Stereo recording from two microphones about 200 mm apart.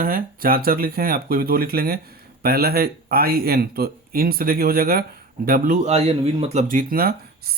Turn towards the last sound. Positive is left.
turn(degrees=-50)  # may be behind; listen again after turning